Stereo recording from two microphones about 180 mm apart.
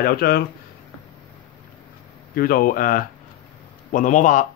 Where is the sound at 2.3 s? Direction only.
55° left (ahead or behind).